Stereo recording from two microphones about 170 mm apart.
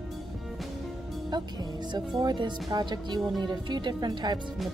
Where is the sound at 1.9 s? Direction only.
25° right (ahead or behind).